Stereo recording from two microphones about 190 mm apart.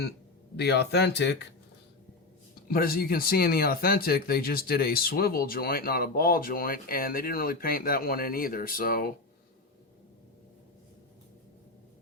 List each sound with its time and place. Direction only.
0.5 s speech: 60° left (ahead or behind)
2.6 s speech: 50° left (ahead or behind)